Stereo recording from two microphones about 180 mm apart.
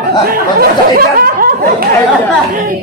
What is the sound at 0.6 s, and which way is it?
Snicker, 55° right (ahead or behind).